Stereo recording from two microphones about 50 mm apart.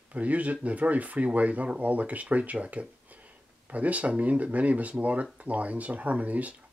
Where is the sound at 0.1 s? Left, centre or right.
Right.